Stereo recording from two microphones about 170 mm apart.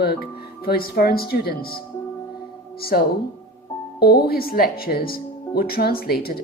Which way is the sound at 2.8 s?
65° left (ahead or behind).